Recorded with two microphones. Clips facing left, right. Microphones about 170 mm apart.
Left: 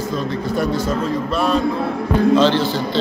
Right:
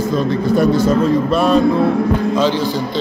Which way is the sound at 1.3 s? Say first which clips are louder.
Right 3 dB; 60° right (ahead or behind).